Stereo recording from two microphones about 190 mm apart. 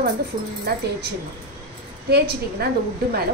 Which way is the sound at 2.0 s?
55° right (ahead or behind).